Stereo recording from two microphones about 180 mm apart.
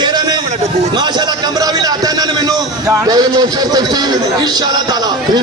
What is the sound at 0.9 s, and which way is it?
A man's voice, 25° right (ahead or behind).